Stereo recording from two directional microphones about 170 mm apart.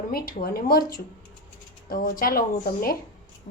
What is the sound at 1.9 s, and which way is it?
A woman's voice, 55° left (ahead or behind).